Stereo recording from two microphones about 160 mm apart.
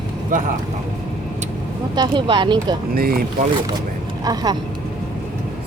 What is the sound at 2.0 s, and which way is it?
Speech, 30° right (ahead or behind).